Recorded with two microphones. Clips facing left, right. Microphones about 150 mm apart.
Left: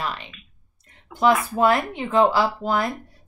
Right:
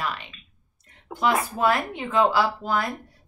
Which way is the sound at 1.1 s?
35° right (ahead or behind).